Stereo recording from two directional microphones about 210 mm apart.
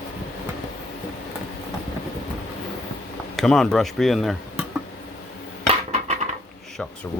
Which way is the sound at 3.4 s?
Centre (ahead or behind).